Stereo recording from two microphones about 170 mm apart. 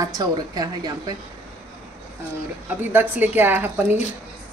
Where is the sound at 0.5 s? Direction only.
25° right (ahead or behind).